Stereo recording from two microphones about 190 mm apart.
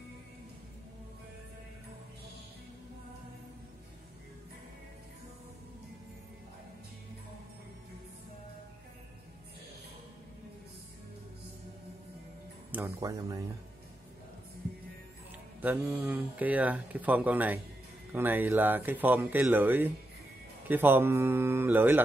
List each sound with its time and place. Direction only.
12.7 s speech: 15° right (ahead or behind)
15.6 s speech: 10° right (ahead or behind)